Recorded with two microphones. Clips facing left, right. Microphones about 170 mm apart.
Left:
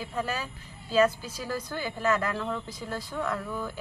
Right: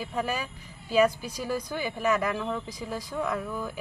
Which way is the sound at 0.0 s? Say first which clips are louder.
Right 2 dB; 10° right (ahead or behind).